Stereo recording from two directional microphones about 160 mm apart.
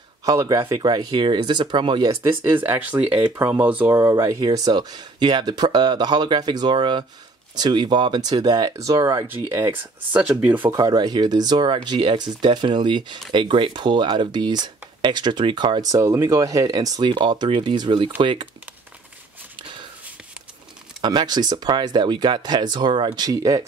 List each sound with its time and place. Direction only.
0.2 s speech: 20° right (ahead or behind)
2.3 s speech: 10° right (ahead or behind)
10.6 s speech: 25° right (ahead or behind)
21.0 s speech: 30° right (ahead or behind)